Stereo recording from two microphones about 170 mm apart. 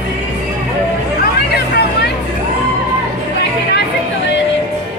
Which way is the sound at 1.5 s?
70° left (ahead or behind).